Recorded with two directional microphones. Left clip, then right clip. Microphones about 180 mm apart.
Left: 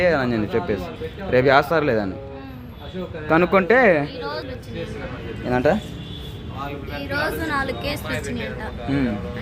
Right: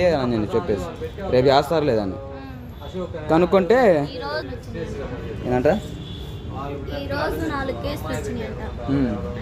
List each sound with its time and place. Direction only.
0.0 s speech: 5° right (ahead or behind)
3.2 s speech: 10° right (ahead or behind)
5.5 s speech: 5° right (ahead or behind)
6.9 s a woman's voice: 20° right (ahead or behind)
8.9 s speech: centre (ahead or behind)